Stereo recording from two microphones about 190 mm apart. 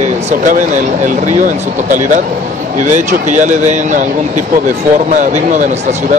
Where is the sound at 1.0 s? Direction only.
45° right (ahead or behind).